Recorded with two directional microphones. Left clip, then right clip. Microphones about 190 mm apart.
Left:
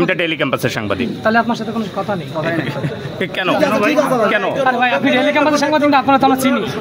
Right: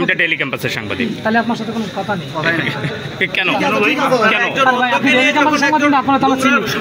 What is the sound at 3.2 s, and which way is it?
Speech, 50° left (ahead or behind).